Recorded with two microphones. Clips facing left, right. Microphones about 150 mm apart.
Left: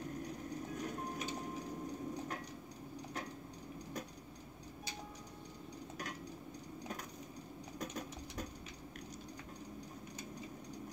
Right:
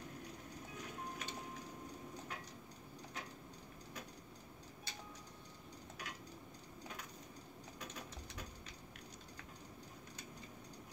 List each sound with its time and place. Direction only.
0.8 s music: 45° left (ahead or behind)
7.8 s sewing machine: 45° left (ahead or behind)